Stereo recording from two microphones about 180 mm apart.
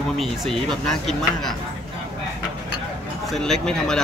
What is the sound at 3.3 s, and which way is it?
Speech, centre (ahead or behind).